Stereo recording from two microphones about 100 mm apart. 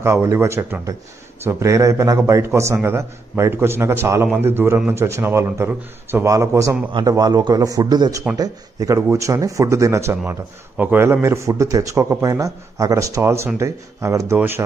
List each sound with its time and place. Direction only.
0.0 s a man's voice: 25° right (ahead or behind)
7.1 s a man's voice: 40° right (ahead or behind); by 14.6 s 25° right (ahead or behind)